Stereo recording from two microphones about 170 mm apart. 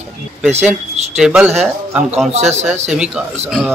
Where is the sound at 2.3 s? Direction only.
40° right (ahead or behind).